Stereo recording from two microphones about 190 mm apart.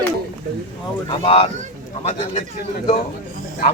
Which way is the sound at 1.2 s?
30° left (ahead or behind).